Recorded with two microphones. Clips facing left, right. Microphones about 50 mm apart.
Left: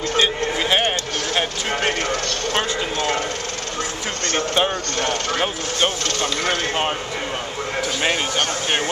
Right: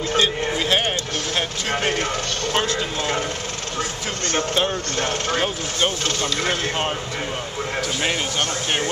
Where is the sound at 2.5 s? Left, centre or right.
Centre.